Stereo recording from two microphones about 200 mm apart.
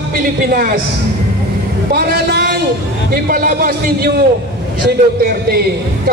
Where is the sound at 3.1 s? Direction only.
45° right (ahead or behind).